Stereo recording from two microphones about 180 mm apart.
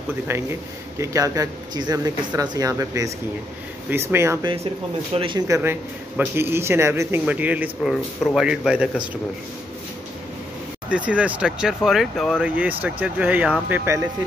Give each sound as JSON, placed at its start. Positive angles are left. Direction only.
{"t": 0.3, "sound": "a man's voice", "side_deg": -15}
{"t": 5.1, "sound": "a man's voice", "side_deg": -30}
{"t": 5.5, "sound": "a man's voice", "side_deg": -10}
{"t": 10.9, "sound": "a man's voice", "side_deg": -5}